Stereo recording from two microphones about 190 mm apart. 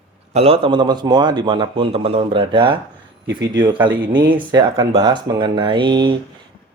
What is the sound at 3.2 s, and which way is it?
Speech, 70° right (ahead or behind).